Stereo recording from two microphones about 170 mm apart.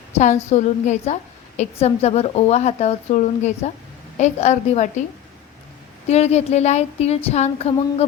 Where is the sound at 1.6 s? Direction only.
40° left (ahead or behind).